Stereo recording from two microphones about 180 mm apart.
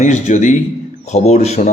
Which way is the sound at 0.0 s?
40° left (ahead or behind).